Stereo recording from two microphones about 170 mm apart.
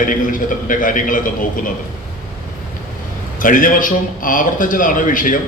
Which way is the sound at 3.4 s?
50° left (ahead or behind).